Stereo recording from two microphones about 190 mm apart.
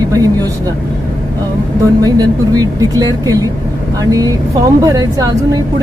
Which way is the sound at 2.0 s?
20° right (ahead or behind).